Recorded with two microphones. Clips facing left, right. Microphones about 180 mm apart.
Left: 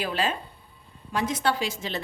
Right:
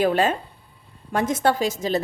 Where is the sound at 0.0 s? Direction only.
45° right (ahead or behind).